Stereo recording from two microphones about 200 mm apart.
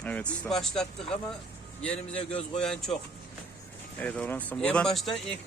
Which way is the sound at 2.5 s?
5° left (ahead or behind).